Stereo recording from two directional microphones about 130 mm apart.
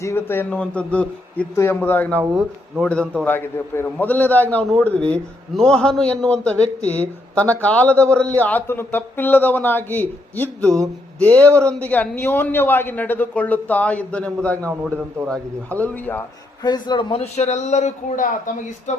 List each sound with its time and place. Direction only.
0.0 s a man's voice: 20° left (ahead or behind)
2.3 s a man's voice: centre (ahead or behind)
16.6 s a man's voice: 35° left (ahead or behind); by 18.9 s 85° left